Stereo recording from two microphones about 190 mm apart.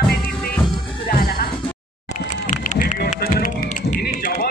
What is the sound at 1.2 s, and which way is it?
Music, 55° left (ahead or behind).